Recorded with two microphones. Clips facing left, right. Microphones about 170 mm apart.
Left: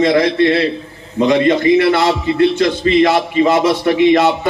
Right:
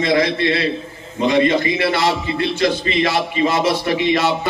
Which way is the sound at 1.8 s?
55° left (ahead or behind).